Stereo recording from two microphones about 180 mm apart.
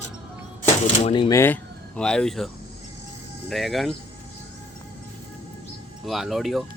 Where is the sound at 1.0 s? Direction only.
30° left (ahead or behind).